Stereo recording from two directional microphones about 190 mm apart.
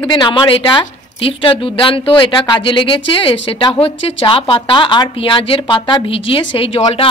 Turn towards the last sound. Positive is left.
turn(degrees=30)  # may be behind; listen again after turning